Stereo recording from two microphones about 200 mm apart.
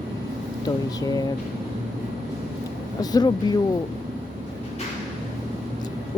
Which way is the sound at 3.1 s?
20° left (ahead or behind).